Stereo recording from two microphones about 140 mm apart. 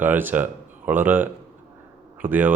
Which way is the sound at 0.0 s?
15° right (ahead or behind).